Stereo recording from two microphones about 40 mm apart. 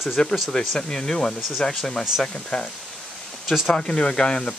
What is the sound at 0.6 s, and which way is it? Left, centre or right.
Speech, centre.